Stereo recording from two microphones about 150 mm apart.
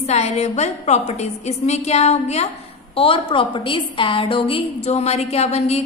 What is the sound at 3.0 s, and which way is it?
A woman's voice, 35° left (ahead or behind).